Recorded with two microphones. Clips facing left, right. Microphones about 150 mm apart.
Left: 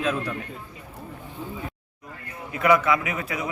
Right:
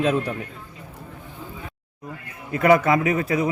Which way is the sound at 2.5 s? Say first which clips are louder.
Right 3 dB; 45° right (ahead or behind).